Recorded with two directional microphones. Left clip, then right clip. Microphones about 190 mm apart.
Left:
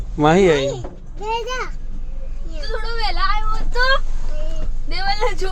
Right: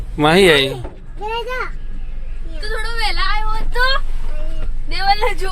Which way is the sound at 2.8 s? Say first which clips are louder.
Right 1 dB; 55° left (ahead or behind).